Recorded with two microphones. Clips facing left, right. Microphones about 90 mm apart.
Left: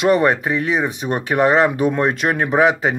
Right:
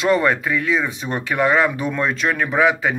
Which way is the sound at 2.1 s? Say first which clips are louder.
Left 2 dB; 40° left (ahead or behind).